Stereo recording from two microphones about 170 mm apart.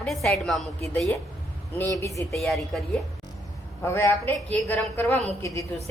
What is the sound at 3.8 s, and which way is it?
A woman's voice, 15° left (ahead or behind).